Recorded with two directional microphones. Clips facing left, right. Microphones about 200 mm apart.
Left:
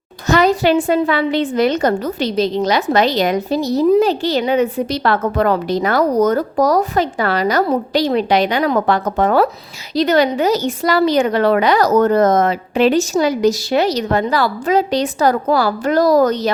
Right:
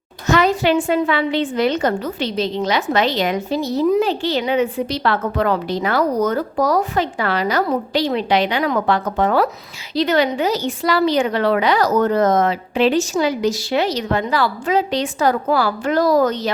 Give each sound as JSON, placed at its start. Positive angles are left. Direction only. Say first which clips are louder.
{"t": 0.3, "sound": "a woman's voice", "louder": "left 3 dB", "side_deg": 40}